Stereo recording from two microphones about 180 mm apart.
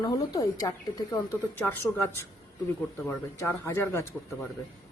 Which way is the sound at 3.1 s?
15° left (ahead or behind).